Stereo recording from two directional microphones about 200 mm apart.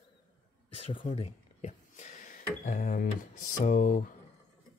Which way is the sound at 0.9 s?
25° left (ahead or behind).